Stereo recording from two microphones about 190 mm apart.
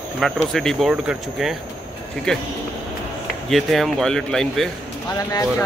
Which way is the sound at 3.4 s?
Centre (ahead or behind).